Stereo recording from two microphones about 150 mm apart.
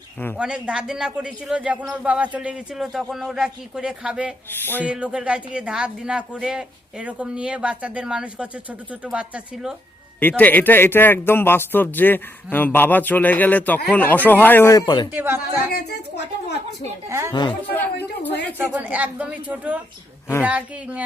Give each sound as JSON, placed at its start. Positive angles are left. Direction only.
{"t": 0.3, "sound": "a man's voice", "side_deg": -5}
{"t": 10.2, "sound": "speech", "side_deg": 10}
{"t": 15.1, "sound": "speech", "side_deg": -15}
{"t": 15.7, "sound": "a woman's voice", "side_deg": 90}
{"t": 17.1, "sound": "speech", "side_deg": -20}
{"t": 18.5, "sound": "speech", "side_deg": -10}